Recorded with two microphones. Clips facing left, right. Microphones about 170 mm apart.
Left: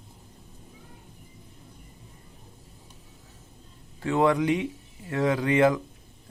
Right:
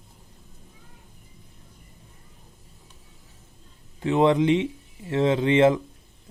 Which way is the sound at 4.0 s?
20° right (ahead or behind).